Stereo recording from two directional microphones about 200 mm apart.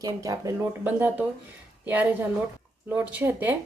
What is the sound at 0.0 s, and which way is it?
Speech, 15° right (ahead or behind).